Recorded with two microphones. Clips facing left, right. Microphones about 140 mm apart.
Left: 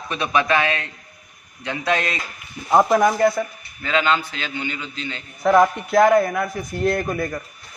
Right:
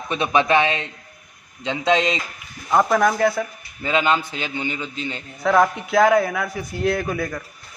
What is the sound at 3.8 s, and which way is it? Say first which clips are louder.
A man's voice: right 1 dB; 15° right (ahead or behind).